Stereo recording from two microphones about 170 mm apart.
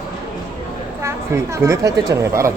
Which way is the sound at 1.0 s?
15° right (ahead or behind).